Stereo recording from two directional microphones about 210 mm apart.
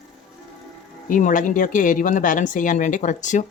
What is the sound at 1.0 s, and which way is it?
Speech, 40° left (ahead or behind).